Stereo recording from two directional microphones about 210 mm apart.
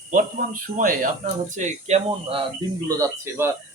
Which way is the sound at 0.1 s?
40° right (ahead or behind).